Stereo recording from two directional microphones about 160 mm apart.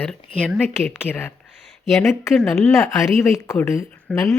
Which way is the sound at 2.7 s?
20° left (ahead or behind).